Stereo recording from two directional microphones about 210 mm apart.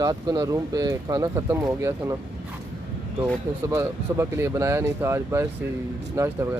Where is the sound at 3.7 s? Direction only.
15° right (ahead or behind).